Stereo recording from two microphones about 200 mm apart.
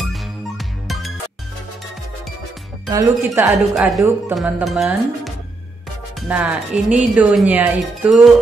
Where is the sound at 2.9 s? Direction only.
15° right (ahead or behind).